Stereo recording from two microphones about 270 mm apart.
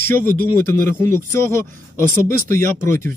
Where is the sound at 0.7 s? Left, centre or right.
Centre.